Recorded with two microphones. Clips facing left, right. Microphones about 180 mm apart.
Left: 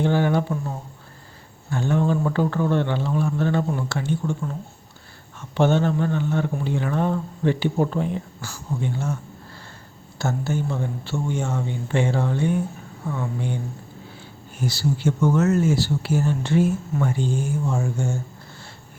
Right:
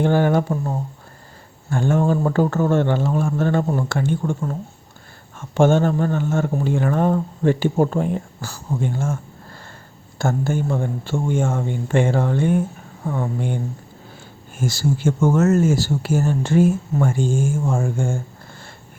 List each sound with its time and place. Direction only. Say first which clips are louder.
0.0 s speech: right 3 dB; 50° right (ahead or behind)
10.2 s speech: right 4 dB; 50° right (ahead or behind)
14.6 s speech: right 2 dB; 45° right (ahead or behind)